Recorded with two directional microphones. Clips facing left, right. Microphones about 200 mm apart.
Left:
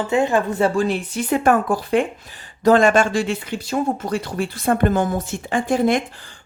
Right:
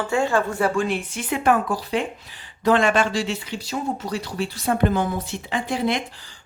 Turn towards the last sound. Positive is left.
turn(degrees=50)  # may be behind; listen again after turning